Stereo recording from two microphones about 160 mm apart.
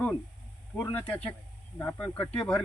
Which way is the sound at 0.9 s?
10° left (ahead or behind).